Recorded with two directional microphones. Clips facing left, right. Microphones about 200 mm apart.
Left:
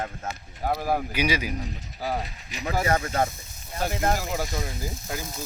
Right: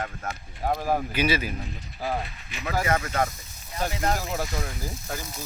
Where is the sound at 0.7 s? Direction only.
5° left (ahead or behind).